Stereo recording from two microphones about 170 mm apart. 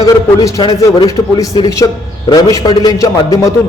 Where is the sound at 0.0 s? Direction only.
20° left (ahead or behind).